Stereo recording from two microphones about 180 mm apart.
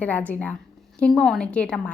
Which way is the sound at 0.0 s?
10° left (ahead or behind).